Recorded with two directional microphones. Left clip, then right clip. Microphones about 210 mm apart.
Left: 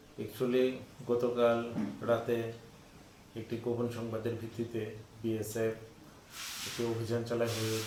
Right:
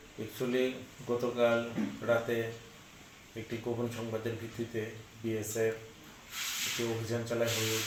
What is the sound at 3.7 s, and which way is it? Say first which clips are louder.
Speech: left 1 dB; 10° left (ahead or behind).